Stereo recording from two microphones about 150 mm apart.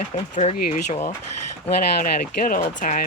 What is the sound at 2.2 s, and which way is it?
Speech, 70° left (ahead or behind).